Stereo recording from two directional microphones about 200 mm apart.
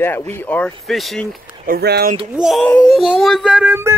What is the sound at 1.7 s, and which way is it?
Speech, 55° right (ahead or behind).